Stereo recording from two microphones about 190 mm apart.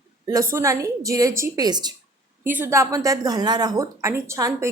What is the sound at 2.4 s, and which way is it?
A woman's voice, 10° right (ahead or behind).